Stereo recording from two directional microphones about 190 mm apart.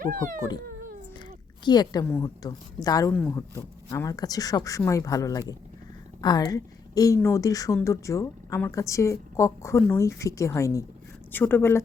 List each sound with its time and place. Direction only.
0.0 s speech: 50° right (ahead or behind)
1.6 s speech: 20° left (ahead or behind)
3.1 s a woman's voice: 10° left (ahead or behind)